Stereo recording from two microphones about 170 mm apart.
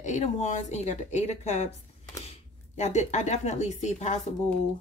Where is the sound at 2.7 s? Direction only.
45° left (ahead or behind).